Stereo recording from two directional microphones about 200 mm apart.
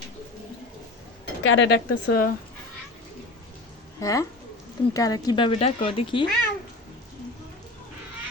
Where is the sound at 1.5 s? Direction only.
70° left (ahead or behind).